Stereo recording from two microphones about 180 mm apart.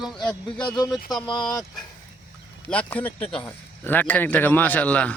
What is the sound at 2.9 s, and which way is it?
A man's voice, 5° left (ahead or behind).